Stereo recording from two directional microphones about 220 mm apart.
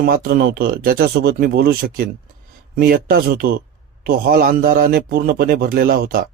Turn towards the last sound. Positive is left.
turn(degrees=-40)  # may be behind; listen again after turning